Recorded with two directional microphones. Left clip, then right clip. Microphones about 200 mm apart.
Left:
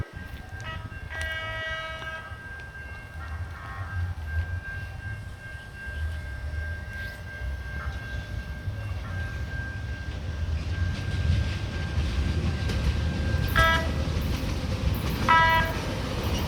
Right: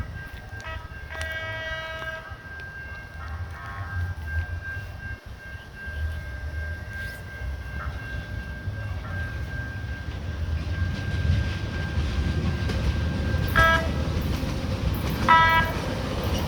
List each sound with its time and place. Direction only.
1.3 s train: 50° right (ahead or behind)
10.8 s vehicle: 45° right (ahead or behind)